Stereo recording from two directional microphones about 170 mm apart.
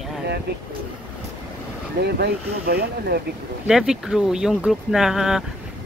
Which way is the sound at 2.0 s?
70° right (ahead or behind).